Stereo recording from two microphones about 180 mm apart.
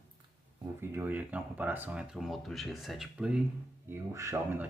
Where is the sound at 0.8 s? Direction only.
10° right (ahead or behind).